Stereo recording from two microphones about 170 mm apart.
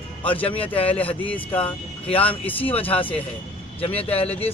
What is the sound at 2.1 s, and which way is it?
Speech, 10° left (ahead or behind).